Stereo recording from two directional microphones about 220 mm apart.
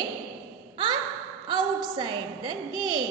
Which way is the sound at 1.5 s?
20° right (ahead or behind).